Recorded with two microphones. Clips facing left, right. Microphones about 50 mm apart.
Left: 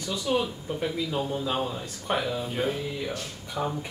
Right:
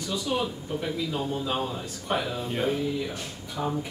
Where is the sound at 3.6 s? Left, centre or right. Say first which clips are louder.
Left 1 dB; centre.